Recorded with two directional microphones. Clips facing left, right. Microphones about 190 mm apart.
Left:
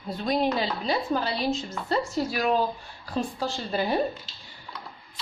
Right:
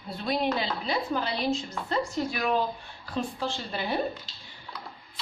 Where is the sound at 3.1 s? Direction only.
40° left (ahead or behind).